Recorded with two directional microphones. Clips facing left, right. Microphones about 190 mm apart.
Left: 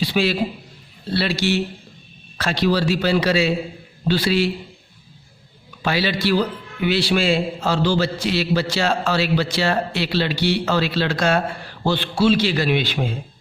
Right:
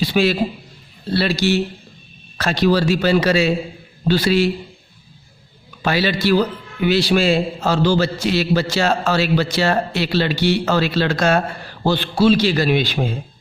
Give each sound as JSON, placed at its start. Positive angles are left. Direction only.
{"t": 0.0, "sound": "a sound", "side_deg": -45}
{"t": 1.1, "sound": "a man's voice", "side_deg": -40}
{"t": 5.8, "sound": "a man's voice", "side_deg": -45}